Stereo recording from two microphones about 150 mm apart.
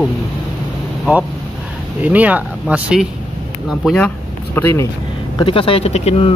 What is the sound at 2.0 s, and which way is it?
Speech, 10° right (ahead or behind).